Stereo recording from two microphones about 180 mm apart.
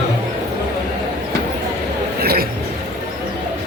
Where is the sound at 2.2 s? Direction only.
55° right (ahead or behind).